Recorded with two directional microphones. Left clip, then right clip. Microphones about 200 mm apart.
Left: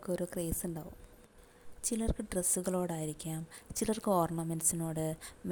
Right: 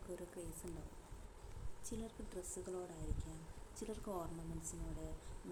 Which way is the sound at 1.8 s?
50° left (ahead or behind).